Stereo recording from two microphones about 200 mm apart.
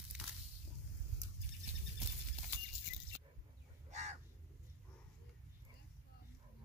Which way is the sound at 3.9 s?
35° right (ahead or behind).